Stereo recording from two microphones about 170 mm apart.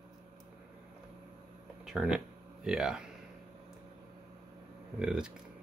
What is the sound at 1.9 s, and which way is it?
Speech, 5° right (ahead or behind).